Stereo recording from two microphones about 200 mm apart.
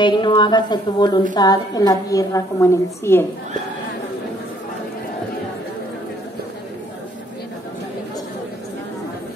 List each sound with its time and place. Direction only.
0.0 s a woman's voice: 25° left (ahead or behind)